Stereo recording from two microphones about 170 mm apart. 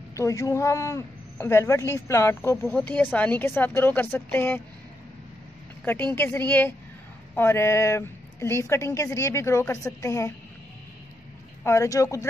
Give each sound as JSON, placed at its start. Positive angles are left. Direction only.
{"t": 0.1, "sound": "a man's voice", "side_deg": 20}
{"t": 6.1, "sound": "a man's voice", "side_deg": 10}
{"t": 11.6, "sound": "speech", "side_deg": 15}